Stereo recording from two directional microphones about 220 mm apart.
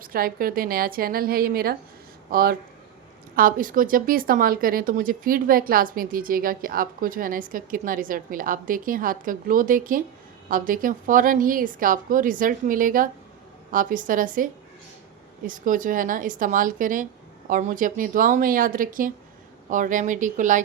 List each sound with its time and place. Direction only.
0.0 s speech: 40° right (ahead or behind)